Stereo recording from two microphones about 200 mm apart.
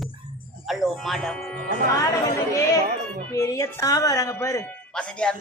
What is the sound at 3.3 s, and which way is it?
Speech, 15° left (ahead or behind).